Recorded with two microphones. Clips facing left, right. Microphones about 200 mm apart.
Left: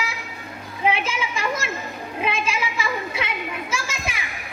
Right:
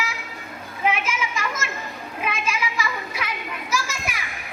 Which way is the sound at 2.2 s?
30° left (ahead or behind).